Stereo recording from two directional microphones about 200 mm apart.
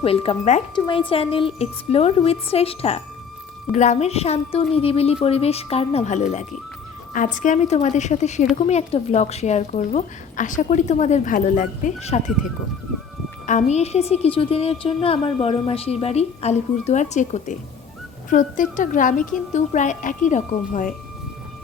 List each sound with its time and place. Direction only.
0.0 s a woman's voice: 30° left (ahead or behind)
13.5 s a woman's voice: 35° left (ahead or behind)